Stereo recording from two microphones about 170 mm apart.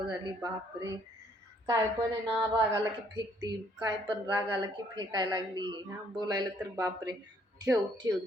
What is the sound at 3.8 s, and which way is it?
Speech, 25° right (ahead or behind).